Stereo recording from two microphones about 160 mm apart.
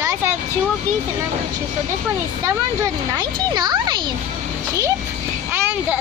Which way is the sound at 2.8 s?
25° right (ahead or behind).